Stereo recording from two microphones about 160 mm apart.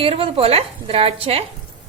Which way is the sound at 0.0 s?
35° right (ahead or behind).